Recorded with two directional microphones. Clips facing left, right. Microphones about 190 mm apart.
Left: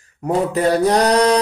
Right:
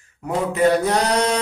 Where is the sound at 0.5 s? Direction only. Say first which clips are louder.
Left 1 dB; 35° left (ahead or behind).